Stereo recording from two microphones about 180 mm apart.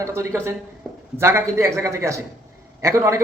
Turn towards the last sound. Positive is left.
turn(degrees=-15)  # may be behind; listen again after turning